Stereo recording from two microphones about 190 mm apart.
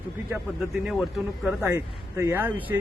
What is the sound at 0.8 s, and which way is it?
Speech, 5° right (ahead or behind).